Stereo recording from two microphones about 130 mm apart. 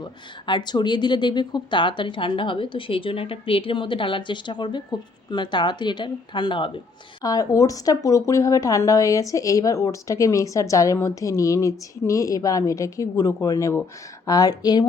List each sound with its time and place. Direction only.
0.0 s speech: 35° left (ahead or behind)